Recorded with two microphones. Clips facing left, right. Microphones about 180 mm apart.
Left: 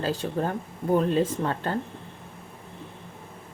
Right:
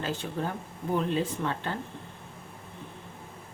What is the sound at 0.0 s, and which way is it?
A woman's voice, 40° left (ahead or behind).